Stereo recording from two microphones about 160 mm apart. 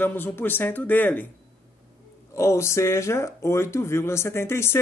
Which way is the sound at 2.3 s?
15° left (ahead or behind).